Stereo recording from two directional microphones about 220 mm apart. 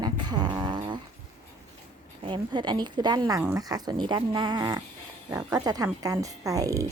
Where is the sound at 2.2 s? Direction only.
20° right (ahead or behind).